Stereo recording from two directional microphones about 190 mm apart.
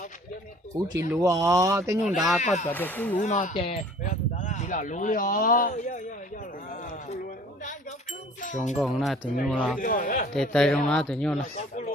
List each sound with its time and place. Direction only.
0.7 s speech: 20° right (ahead or behind)
2.0 s speech: 5° right (ahead or behind)
2.4 s speech: 40° left (ahead or behind)
2.6 s speech: 10° left (ahead or behind)
3.2 s speech: 40° left (ahead or behind)
7.6 s a sound: 40° left (ahead or behind)
8.7 s speech: centre (ahead or behind)
9.8 s speech: 45° left (ahead or behind)
10.3 s speech: 5° left (ahead or behind)